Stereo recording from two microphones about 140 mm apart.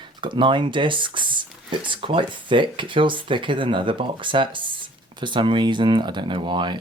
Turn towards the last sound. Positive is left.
turn(degrees=-35)  # may be behind; listen again after turning